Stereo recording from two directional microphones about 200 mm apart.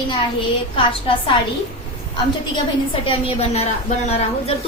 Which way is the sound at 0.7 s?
25° left (ahead or behind).